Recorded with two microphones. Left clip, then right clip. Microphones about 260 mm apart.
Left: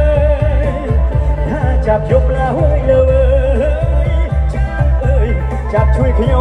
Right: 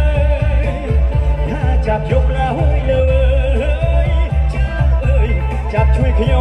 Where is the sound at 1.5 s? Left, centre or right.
Centre.